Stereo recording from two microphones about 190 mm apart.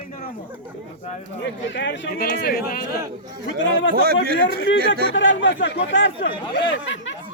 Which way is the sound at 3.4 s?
80° left.